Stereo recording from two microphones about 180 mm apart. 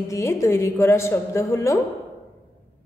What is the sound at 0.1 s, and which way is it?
A woman's voice, 15° left (ahead or behind).